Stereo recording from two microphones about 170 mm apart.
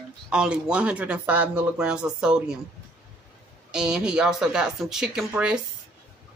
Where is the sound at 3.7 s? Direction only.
5° right (ahead or behind).